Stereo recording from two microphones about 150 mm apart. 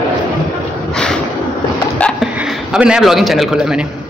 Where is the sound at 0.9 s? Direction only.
5° left (ahead or behind).